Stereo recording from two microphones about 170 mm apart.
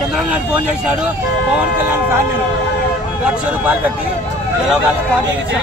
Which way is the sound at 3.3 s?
10° right (ahead or behind).